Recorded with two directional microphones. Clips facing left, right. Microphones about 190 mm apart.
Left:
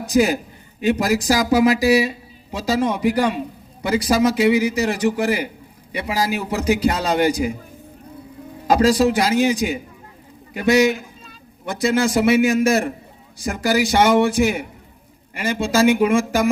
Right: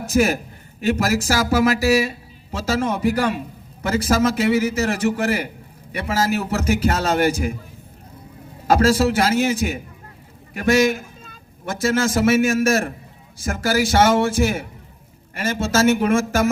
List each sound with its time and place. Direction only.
0.0 s a man's voice: 15° left (ahead or behind)
8.6 s speech: 15° left (ahead or behind)